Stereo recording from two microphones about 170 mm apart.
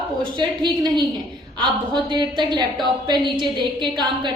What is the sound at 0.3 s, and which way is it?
A woman's voice, 25° right (ahead or behind).